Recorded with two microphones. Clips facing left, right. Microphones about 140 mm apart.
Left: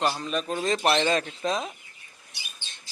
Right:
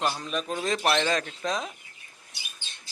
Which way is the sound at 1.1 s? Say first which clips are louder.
Left 2 dB; 5° left (ahead or behind).